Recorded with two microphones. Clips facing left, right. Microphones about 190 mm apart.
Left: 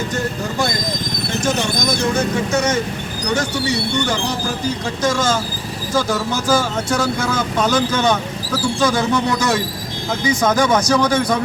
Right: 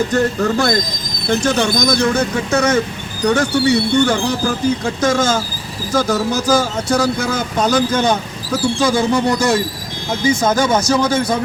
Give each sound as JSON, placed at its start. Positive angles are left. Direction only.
{"t": 0.1, "sound": "speech", "side_deg": -65}